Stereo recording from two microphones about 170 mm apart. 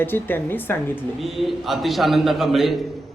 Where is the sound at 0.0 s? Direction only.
10° left (ahead or behind).